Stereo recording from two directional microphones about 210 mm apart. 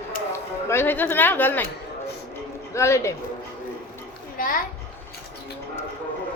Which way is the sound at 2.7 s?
15° left (ahead or behind).